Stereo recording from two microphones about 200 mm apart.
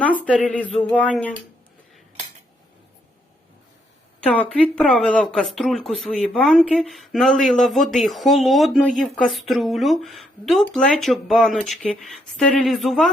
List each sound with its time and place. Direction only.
0.3 s speech: 5° left (ahead or behind)
4.3 s speech: 5° left (ahead or behind)